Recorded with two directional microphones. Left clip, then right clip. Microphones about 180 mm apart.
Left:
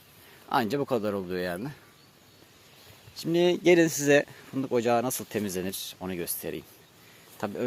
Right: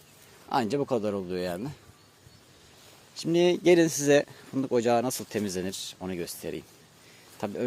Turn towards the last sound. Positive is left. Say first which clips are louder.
# even
turn(degrees=-5)  # may be behind; listen again after turning